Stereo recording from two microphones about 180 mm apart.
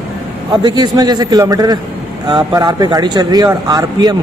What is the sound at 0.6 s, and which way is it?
A woman's voice, 20° right (ahead or behind).